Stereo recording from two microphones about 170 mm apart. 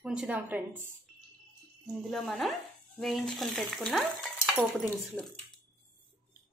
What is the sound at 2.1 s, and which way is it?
Speech, centre (ahead or behind).